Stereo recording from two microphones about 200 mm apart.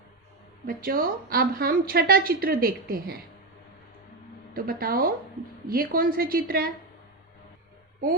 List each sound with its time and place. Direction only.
0.7 s a woman's voice: 45° right (ahead or behind)
4.5 s a woman's voice: 45° right (ahead or behind)